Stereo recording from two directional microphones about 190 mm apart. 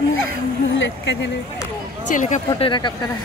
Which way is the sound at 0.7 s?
75° left (ahead or behind).